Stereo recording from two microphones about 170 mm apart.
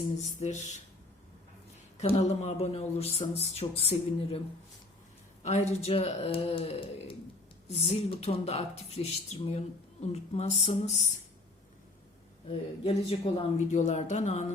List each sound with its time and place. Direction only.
0.3 s speech: 45° left (ahead or behind)
2.0 s speech: 40° left (ahead or behind)
5.4 s speech: 40° left (ahead or behind)
12.5 s speech: 35° left (ahead or behind)